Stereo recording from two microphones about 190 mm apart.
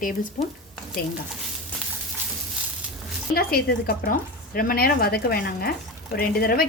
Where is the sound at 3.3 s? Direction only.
55° left (ahead or behind).